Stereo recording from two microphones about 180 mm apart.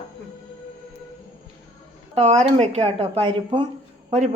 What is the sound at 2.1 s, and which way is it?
Speech, 40° right (ahead or behind).